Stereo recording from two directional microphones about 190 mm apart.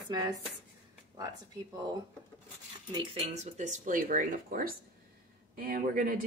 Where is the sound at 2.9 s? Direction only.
35° right (ahead or behind).